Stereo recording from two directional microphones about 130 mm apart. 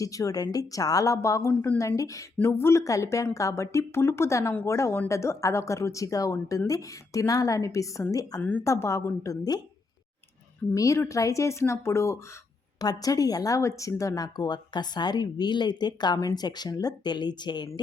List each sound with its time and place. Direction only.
0.0 s speech: 25° left (ahead or behind)
8.4 s speech: 15° left (ahead or behind)
10.8 s a woman's voice: 25° left (ahead or behind)